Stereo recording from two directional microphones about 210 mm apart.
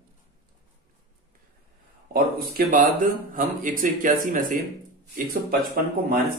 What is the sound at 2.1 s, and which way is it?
A man's voice, 45° right (ahead or behind).